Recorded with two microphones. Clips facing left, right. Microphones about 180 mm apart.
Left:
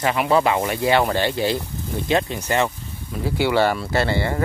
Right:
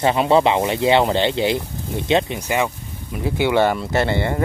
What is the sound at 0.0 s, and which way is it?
Speech, 25° right (ahead or behind).